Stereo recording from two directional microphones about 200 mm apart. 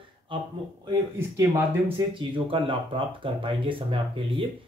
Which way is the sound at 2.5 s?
25° right (ahead or behind).